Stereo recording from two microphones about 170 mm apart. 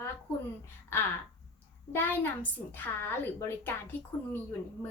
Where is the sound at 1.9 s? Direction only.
10° left (ahead or behind).